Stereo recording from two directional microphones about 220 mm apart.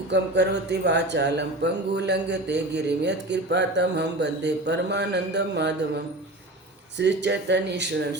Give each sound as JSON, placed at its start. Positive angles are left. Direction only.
{"t": 0.1, "sound": "speech", "side_deg": -50}
{"t": 7.0, "sound": "speech", "side_deg": -50}